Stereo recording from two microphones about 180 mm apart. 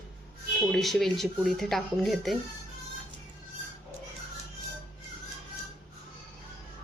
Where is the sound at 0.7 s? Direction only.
Centre (ahead or behind).